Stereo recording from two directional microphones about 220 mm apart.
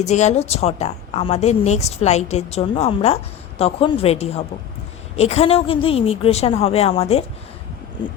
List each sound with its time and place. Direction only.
0.0 s a woman's voice: 30° left (ahead or behind)